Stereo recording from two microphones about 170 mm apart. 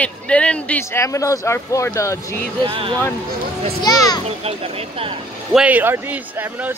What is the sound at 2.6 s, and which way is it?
Speech, 30° right (ahead or behind).